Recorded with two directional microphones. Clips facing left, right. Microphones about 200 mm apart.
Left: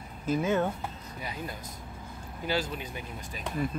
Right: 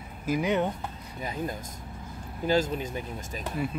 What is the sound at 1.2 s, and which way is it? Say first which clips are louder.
Speech: right 6 dB; 45° right (ahead or behind).